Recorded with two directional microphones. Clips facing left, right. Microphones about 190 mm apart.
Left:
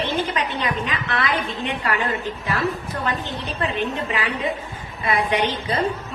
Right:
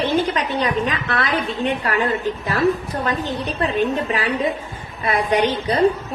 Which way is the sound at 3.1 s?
35° right (ahead or behind).